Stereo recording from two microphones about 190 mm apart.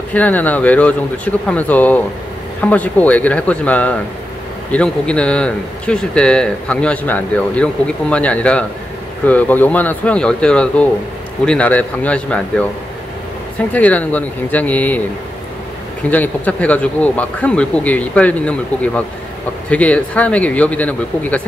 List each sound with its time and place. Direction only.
0.1 s speech: 10° left (ahead or behind)
13.7 s speech: 10° left (ahead or behind)
16.1 s speech: 10° left (ahead or behind)